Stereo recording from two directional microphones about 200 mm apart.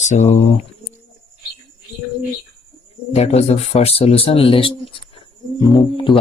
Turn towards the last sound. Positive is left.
turn(degrees=25)  # may be behind; listen again after turning